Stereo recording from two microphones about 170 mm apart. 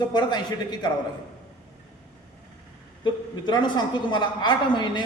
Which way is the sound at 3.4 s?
25° left (ahead or behind).